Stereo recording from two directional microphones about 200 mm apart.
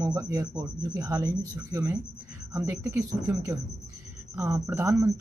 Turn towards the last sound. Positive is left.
turn(degrees=-10)  # may be behind; listen again after turning